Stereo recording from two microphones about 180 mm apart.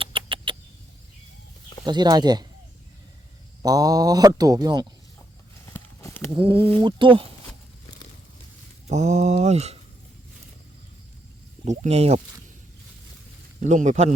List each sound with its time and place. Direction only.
0.0 s rodents: 30° right (ahead or behind)
1.8 s speech: 25° right (ahead or behind)
3.6 s speech: 20° right (ahead or behind)
5.6 s walk: 15° left (ahead or behind)
6.3 s speech: 30° right (ahead or behind)
8.9 s speech: 40° right (ahead or behind)
11.6 s speech: 40° right (ahead or behind)
13.6 s speech: 45° right (ahead or behind)